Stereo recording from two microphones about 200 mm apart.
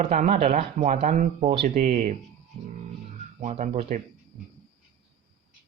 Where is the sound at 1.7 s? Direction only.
45° right (ahead or behind).